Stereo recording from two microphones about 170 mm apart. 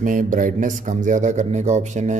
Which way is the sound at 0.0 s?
50° right (ahead or behind).